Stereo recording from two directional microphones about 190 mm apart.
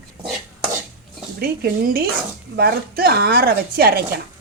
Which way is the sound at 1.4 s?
50° right (ahead or behind).